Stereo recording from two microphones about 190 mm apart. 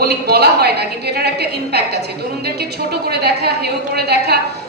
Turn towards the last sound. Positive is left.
turn(degrees=-60)  # may be behind; listen again after turning